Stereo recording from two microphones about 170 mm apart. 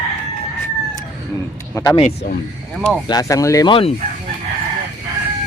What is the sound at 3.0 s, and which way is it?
Speech, 20° left (ahead or behind).